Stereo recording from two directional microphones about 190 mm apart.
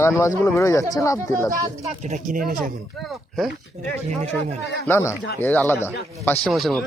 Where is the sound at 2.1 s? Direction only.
45° right (ahead or behind).